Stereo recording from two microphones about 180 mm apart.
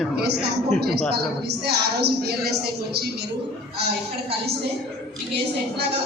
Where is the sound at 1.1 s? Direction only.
65° right (ahead or behind).